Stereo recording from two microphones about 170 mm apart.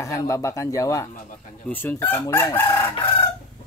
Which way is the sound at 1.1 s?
50° left (ahead or behind).